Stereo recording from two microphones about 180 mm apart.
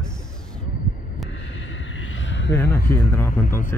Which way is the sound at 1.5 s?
90° left.